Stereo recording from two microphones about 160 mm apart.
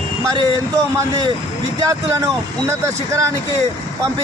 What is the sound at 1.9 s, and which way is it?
Speech, 20° right (ahead or behind).